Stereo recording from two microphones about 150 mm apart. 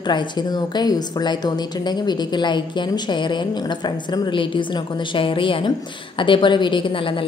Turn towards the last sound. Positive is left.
turn(degrees=35)  # may be behind; listen again after turning